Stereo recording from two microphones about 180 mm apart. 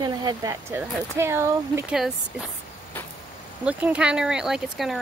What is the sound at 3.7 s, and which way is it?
Speech, 5° right (ahead or behind).